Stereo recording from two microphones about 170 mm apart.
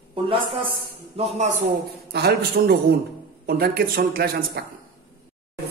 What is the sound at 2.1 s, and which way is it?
A man's voice, 70° right (ahead or behind).